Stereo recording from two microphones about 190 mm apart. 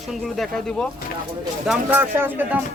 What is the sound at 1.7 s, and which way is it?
Speech, 10° right (ahead or behind).